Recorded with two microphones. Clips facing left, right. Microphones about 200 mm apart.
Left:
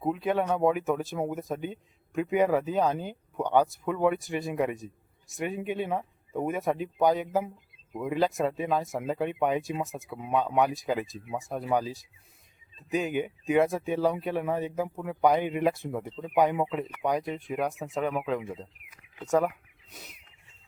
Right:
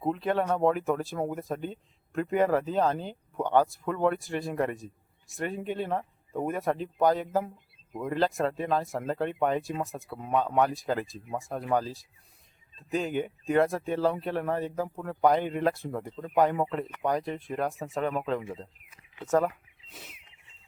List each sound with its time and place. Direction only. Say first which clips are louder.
0.0 s speech: even; 5° left (ahead or behind)
15.4 s speech: left 1 dB; 15° left (ahead or behind)
15.7 s speech: left 1 dB; centre (ahead or behind)
16.0 s speech: even; 15° left (ahead or behind)
16.4 s speech: even; centre (ahead or behind)